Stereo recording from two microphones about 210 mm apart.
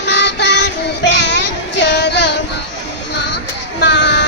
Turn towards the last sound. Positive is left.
turn(degrees=55)  # may be behind; listen again after turning